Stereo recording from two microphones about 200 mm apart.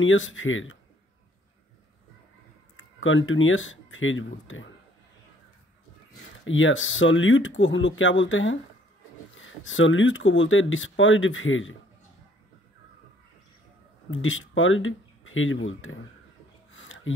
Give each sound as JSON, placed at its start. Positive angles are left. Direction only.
{"t": 0.0, "sound": "speech", "side_deg": 75}
{"t": 2.8, "sound": "speech", "side_deg": 75}
{"t": 6.4, "sound": "speech", "side_deg": 75}
{"t": 14.1, "sound": "speech", "side_deg": 75}
{"t": 16.7, "sound": "music", "side_deg": 70}